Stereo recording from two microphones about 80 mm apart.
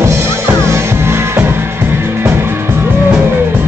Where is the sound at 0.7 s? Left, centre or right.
Right.